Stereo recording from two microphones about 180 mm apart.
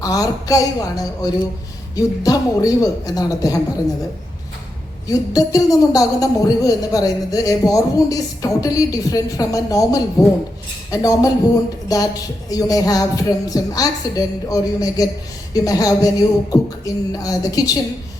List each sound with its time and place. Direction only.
0.0 s speech: 20° left (ahead or behind)
5.3 s speech: 20° left (ahead or behind)